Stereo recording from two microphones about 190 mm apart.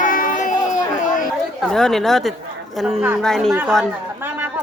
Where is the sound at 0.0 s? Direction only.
45° left (ahead or behind).